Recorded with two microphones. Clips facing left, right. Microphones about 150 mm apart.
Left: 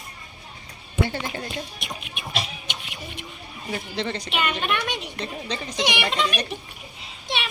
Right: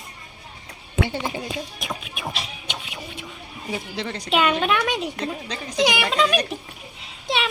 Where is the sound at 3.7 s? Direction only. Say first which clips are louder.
Left 1 dB; 5° right (ahead or behind).